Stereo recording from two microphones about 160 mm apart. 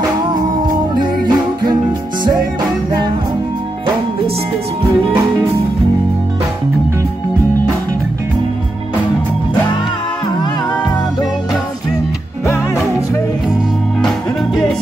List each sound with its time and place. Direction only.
0.9 s music: 25° right (ahead or behind)